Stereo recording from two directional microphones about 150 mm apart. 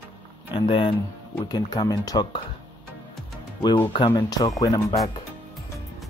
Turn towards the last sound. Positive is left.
turn(degrees=25)  # may be behind; listen again after turning